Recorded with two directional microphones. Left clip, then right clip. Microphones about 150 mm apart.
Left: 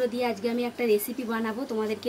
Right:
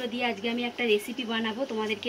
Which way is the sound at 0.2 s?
5° right (ahead or behind).